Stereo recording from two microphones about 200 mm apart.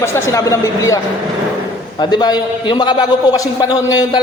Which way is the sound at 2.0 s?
20° left (ahead or behind).